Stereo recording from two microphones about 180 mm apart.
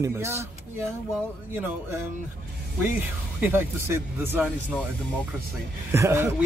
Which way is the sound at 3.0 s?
10° right (ahead or behind).